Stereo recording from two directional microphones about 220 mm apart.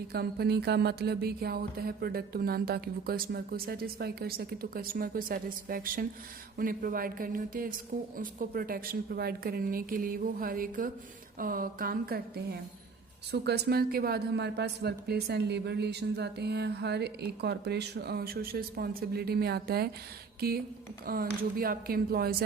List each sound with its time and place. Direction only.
0.1 s a woman's voice: 45° right (ahead or behind)